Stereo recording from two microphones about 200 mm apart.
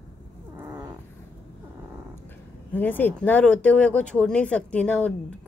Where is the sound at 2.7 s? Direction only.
10° left (ahead or behind).